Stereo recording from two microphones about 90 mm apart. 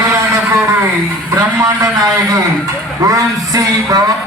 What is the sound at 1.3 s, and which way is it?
A man's voice, 35° right (ahead or behind).